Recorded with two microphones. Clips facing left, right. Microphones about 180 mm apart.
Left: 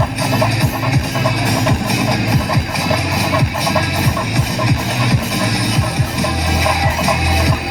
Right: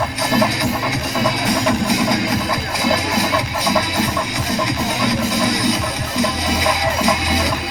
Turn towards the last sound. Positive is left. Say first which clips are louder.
# left 1 dB
turn(degrees=65)  # may be behind; listen again after turning